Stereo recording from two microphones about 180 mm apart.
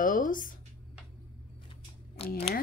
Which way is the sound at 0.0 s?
50° left (ahead or behind).